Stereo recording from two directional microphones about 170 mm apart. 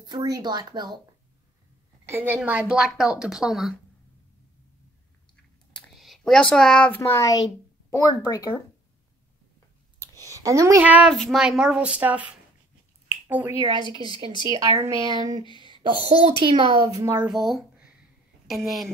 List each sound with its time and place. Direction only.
0.0 s speech: 25° right (ahead or behind)
2.0 s a woman's voice: 10° right (ahead or behind)
5.8 s speech: centre (ahead or behind); by 8.5 s 20° left (ahead or behind)
10.2 s speech: 20° right (ahead or behind)
10.8 s a woman's voice: 10° right (ahead or behind)
13.9 s speech: 30° right (ahead or behind)
14.5 s a woman's voice: 20° right (ahead or behind)
17.0 s a woman's voice: 15° right (ahead or behind)
17.3 s a woman's voice: centre (ahead or behind)